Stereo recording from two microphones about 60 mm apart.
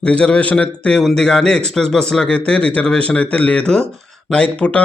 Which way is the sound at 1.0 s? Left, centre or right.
Centre.